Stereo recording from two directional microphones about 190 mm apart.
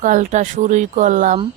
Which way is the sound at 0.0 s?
40° right (ahead or behind).